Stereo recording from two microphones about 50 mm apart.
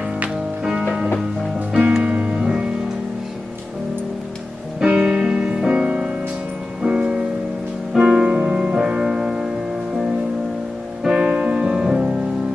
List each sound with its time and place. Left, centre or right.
1.7 s music: centre
4.8 s music: centre
11.1 s music: right